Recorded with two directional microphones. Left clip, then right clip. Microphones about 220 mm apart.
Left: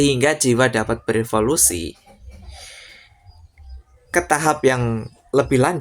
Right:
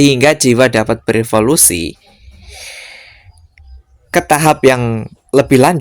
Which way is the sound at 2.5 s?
40° right (ahead or behind).